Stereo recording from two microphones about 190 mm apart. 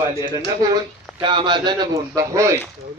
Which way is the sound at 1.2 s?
25° right (ahead or behind).